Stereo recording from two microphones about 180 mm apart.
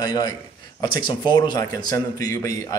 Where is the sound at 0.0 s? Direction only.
20° left (ahead or behind).